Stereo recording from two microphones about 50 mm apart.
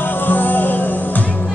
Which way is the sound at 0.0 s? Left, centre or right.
Left.